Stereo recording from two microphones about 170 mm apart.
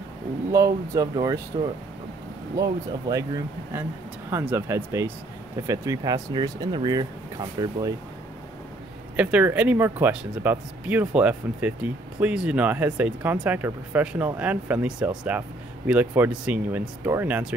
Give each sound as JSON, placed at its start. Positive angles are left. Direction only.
{"t": 0.5, "sound": "speech", "side_deg": -20}
{"t": 4.3, "sound": "speech", "side_deg": -15}
{"t": 9.1, "sound": "speech", "side_deg": -5}